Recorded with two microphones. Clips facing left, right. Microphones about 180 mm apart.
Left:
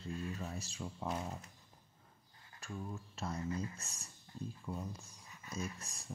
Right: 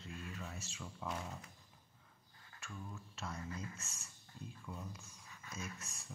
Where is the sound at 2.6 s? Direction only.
35° left (ahead or behind).